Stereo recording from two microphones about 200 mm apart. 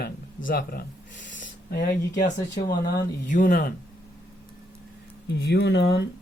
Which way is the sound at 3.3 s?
40° left (ahead or behind).